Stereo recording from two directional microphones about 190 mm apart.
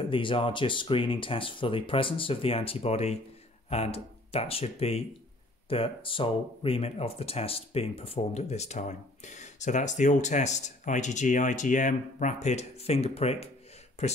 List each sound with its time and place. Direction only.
0.1 s speech: 25° left (ahead or behind)